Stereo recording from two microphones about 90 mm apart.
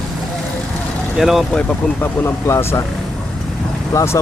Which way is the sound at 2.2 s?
30° left (ahead or behind).